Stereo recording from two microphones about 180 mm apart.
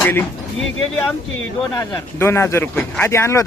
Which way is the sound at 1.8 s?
15° left (ahead or behind).